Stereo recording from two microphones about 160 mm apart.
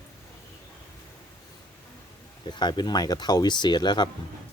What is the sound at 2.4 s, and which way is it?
Speech, 25° left (ahead or behind).